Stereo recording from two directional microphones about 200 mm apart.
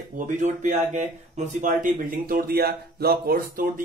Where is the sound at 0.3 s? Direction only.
40° right (ahead or behind).